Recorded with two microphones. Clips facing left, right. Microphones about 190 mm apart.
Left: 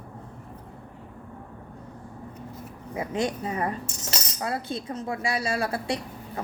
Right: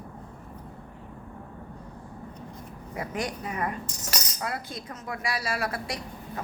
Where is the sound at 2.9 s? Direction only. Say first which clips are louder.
Left 5 dB; 25° left (ahead or behind).